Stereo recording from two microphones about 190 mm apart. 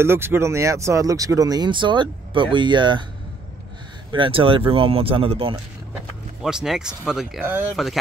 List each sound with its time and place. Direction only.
0.0 s speech: 10° right (ahead or behind)
4.1 s speech: 25° right (ahead or behind)
6.4 s speech: centre (ahead or behind)